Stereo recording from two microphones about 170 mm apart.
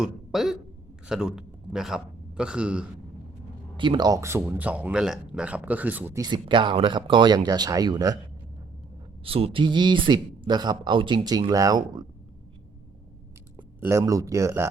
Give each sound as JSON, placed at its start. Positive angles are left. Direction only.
{"t": 0.0, "sound": "a man's voice", "side_deg": 0}
{"t": 3.8, "sound": "speech", "side_deg": -25}
{"t": 9.2, "sound": "speech", "side_deg": -35}
{"t": 13.7, "sound": "speech", "side_deg": -15}